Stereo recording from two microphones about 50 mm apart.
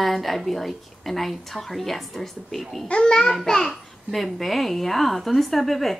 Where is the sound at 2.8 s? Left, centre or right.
Centre.